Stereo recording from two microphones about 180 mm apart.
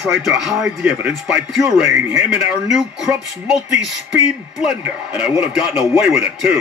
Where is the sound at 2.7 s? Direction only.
5° right (ahead or behind).